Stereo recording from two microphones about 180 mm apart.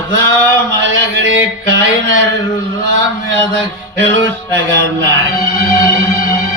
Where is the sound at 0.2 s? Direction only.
90° right.